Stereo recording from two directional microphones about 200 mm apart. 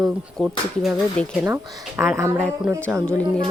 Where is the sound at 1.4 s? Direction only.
15° right (ahead or behind).